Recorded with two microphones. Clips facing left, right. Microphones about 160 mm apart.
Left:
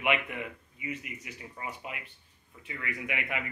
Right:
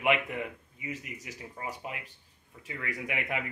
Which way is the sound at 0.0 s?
35° right (ahead or behind).